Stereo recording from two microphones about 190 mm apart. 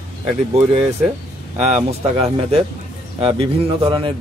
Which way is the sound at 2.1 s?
30° right (ahead or behind).